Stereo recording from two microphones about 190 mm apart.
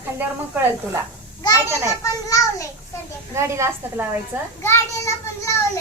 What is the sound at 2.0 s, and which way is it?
Speech, 15° left (ahead or behind).